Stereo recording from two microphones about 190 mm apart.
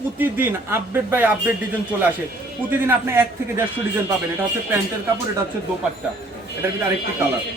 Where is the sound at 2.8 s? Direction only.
15° right (ahead or behind).